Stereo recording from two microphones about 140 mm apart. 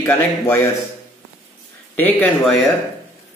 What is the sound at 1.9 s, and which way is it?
Speech, 15° left (ahead or behind).